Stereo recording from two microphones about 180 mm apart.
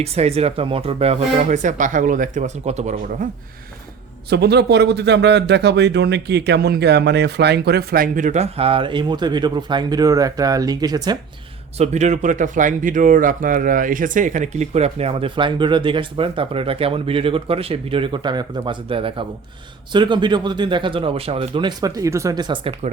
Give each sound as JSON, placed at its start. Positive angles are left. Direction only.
{"t": 0.0, "sound": "speech", "side_deg": -35}
{"t": 4.3, "sound": "speech", "side_deg": -65}
{"t": 11.8, "sound": "speech", "side_deg": -40}